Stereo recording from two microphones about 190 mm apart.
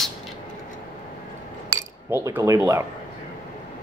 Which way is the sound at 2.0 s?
10° right (ahead or behind).